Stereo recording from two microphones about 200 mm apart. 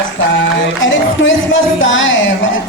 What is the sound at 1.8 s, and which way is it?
Speech, 70° left (ahead or behind).